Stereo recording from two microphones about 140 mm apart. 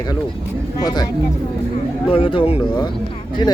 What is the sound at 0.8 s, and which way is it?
Speech, 25° left (ahead or behind).